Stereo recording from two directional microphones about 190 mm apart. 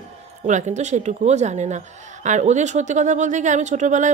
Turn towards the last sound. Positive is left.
turn(degrees=-40)  # may be behind; listen again after turning